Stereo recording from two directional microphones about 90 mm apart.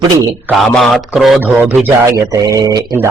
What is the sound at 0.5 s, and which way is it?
Speech, centre (ahead or behind).